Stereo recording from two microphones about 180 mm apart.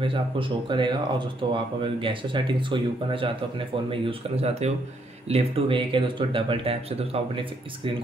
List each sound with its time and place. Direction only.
0.0 s speech: 30° right (ahead or behind)